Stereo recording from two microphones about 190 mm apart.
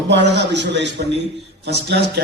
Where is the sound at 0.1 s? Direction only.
65° right (ahead or behind).